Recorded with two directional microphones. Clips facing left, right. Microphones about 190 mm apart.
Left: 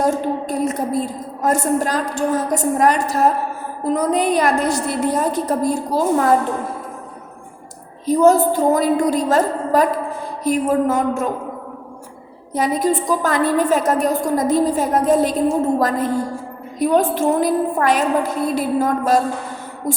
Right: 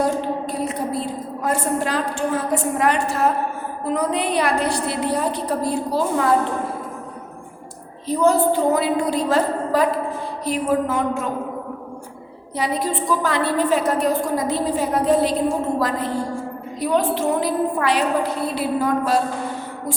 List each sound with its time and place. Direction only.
0.0 s a woman's voice: 45° left (ahead or behind)
8.0 s a woman's voice: 45° left (ahead or behind)
12.5 s a woman's voice: 45° left (ahead or behind)